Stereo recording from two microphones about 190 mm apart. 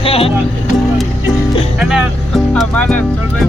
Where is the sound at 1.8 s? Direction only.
5° right (ahead or behind).